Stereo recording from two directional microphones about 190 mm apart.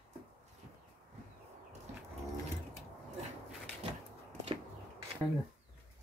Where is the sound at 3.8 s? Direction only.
35° right (ahead or behind).